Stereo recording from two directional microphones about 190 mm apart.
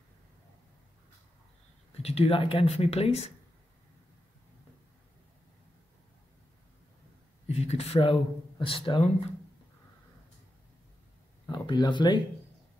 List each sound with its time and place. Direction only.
2.0 s speech: 30° left (ahead or behind)
7.4 s speech: 35° left (ahead or behind)
11.4 s speech: 25° left (ahead or behind)